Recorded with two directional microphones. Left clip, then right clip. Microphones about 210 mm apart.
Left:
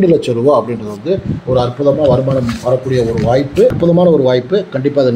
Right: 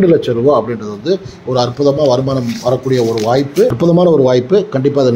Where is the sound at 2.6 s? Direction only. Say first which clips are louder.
Right 1 dB; 25° right (ahead or behind).